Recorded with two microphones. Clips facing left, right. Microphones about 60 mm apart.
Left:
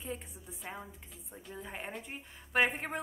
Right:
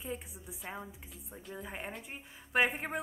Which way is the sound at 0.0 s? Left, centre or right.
Centre.